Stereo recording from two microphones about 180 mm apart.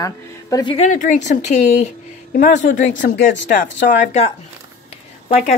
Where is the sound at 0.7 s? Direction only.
40° left (ahead or behind).